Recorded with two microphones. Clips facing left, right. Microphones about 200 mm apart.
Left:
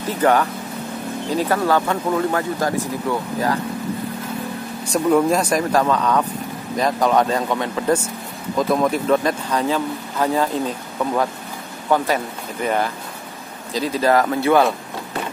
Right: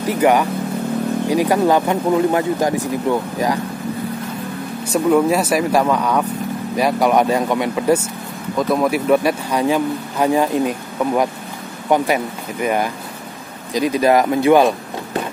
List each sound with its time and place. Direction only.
0.0 s a man's voice: 15° right (ahead or behind)
4.9 s a man's voice: 5° right (ahead or behind)